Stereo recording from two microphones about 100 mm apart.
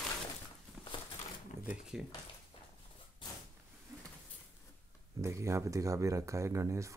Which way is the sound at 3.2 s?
50° left (ahead or behind).